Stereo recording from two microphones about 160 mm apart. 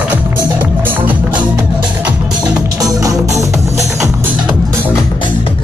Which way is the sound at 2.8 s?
20° right (ahead or behind).